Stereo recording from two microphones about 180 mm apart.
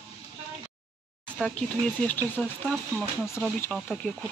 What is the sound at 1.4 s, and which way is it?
Speech, 5° left (ahead or behind).